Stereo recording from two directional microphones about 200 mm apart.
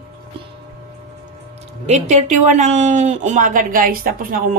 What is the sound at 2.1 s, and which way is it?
A woman's voice, 35° right (ahead or behind).